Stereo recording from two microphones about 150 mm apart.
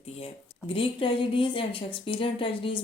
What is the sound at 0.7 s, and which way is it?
Speech, 35° left (ahead or behind).